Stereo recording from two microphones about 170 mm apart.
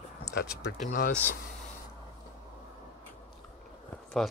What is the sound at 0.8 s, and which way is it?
Speech, 55° left (ahead or behind).